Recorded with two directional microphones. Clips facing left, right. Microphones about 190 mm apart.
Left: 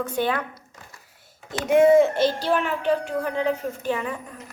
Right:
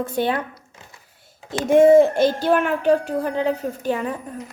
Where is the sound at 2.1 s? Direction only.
50° right (ahead or behind).